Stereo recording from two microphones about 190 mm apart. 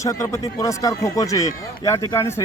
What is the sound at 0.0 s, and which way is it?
Speech, 15° left (ahead or behind).